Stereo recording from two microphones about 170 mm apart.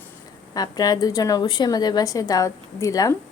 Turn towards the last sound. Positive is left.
turn(degrees=20)  # may be behind; listen again after turning